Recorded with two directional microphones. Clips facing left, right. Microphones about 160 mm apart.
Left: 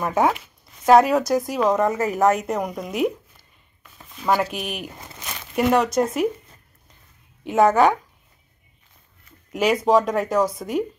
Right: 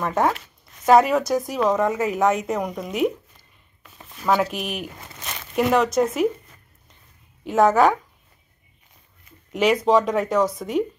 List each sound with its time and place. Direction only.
0.0 s speech: 5° left (ahead or behind)
7.4 s speech: centre (ahead or behind)
9.5 s speech: 5° left (ahead or behind)